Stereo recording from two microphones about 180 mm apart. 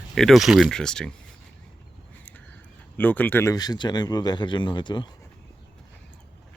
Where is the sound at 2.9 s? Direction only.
10° left (ahead or behind); by 5.0 s 25° left (ahead or behind).